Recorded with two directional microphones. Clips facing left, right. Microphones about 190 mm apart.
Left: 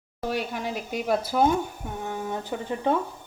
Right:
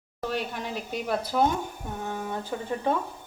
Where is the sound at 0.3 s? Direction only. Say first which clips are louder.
Left 2 dB; 10° left (ahead or behind).